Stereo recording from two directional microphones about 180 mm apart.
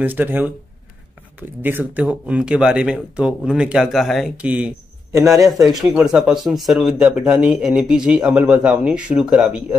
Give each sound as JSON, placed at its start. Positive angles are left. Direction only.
{"t": 0.0, "sound": "speech", "side_deg": -10}
{"t": 1.6, "sound": "speech", "side_deg": -10}
{"t": 5.6, "sound": "speech", "side_deg": -20}
{"t": 5.9, "sound": "speech", "side_deg": -5}